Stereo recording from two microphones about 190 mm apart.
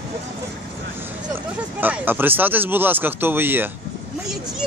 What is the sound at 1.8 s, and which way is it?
Speech, 10° right (ahead or behind).